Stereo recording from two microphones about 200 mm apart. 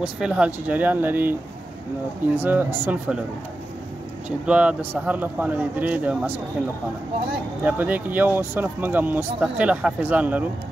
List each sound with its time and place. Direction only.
0.0 s speech: 5° right (ahead or behind)
2.3 s speech: 10° right (ahead or behind)
4.5 s speech: 5° right (ahead or behind)
7.6 s speech: 10° right (ahead or behind)